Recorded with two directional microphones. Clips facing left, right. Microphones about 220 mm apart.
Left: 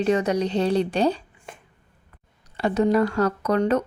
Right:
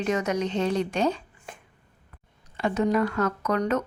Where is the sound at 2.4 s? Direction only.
35° left (ahead or behind).